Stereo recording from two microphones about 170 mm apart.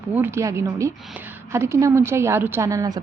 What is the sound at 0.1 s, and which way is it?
A woman's voice, 15° right (ahead or behind).